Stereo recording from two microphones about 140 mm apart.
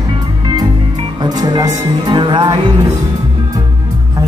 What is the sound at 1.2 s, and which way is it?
Speech, 30° right (ahead or behind).